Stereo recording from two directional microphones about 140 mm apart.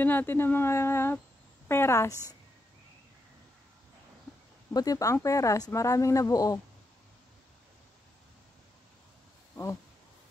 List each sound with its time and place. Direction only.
0.0 s speech: 15° left (ahead or behind)
4.7 s speech: 25° left (ahead or behind)